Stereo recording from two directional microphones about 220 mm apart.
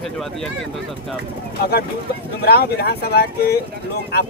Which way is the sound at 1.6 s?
45° left (ahead or behind).